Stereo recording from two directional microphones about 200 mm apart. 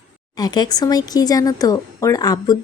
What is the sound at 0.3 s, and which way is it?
Speech, 20° left (ahead or behind).